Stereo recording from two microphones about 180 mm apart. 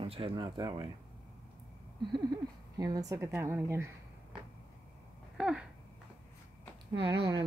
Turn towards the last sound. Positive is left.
turn(degrees=-25)  # may be behind; listen again after turning